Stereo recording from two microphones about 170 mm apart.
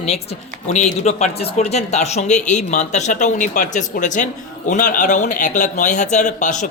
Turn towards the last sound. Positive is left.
turn(degrees=45)  # may be behind; listen again after turning